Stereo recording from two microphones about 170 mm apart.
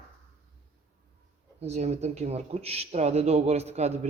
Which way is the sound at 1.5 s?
40° right (ahead or behind).